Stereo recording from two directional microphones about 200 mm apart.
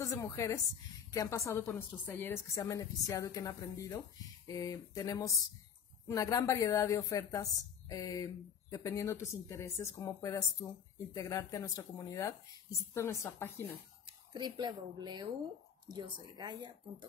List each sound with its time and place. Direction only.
0.0 s speech: 15° left (ahead or behind)
14.0 s a woman's voice: 20° right (ahead or behind)